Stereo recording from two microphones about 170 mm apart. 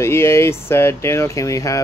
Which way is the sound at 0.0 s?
15° left (ahead or behind).